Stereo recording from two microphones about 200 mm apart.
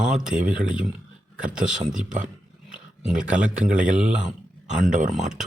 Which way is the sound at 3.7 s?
5° right (ahead or behind).